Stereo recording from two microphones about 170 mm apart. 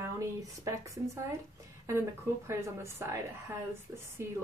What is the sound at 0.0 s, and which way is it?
A woman's voice, 20° right (ahead or behind).